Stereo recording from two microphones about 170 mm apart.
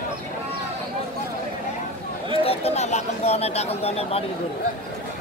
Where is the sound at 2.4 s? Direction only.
40° left (ahead or behind).